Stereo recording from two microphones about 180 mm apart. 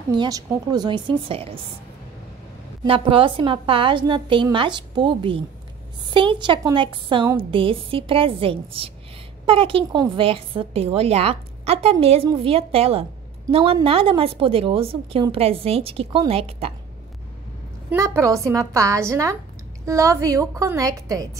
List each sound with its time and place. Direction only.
0.1 s a woman's voice: 20° right (ahead or behind)
2.8 s a woman's voice: 30° right (ahead or behind)
17.8 s a woman's voice: 15° right (ahead or behind)